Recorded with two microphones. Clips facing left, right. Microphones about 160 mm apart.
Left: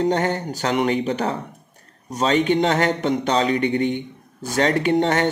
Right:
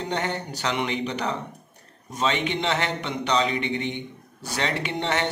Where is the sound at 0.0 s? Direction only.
40° left (ahead or behind).